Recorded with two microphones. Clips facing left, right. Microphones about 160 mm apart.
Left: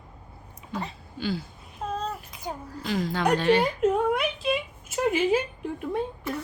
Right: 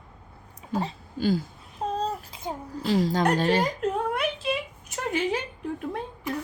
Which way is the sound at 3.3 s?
40° right (ahead or behind).